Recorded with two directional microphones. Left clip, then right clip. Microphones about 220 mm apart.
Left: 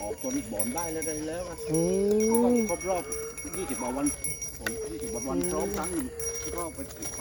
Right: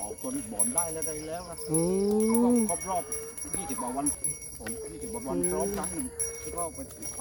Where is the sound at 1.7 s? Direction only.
30° right (ahead or behind).